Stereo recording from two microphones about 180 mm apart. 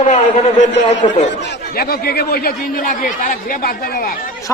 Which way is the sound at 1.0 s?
30° left (ahead or behind).